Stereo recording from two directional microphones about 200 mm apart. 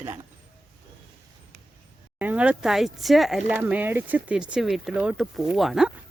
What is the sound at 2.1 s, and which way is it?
Speech, 5° right (ahead or behind).